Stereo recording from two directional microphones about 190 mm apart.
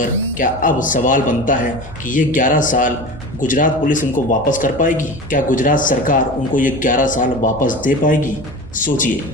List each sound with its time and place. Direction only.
0.0 s speech: 45° left (ahead or behind)